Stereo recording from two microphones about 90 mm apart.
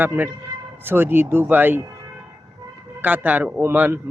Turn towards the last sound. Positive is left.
turn(degrees=-25)  # may be behind; listen again after turning